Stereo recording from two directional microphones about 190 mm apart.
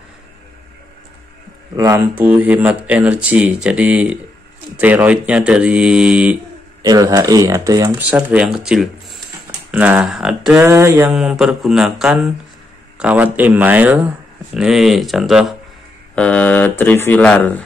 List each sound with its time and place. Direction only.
1.8 s speech: 15° right (ahead or behind)
6.8 s speech: 20° right (ahead or behind)
8.3 s speech: 5° right (ahead or behind)
16.2 s a sound: 5° left (ahead or behind)